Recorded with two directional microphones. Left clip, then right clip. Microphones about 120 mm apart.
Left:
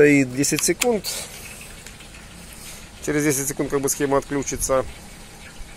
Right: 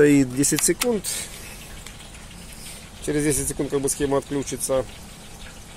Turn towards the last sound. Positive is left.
turn(degrees=5)  # may be behind; listen again after turning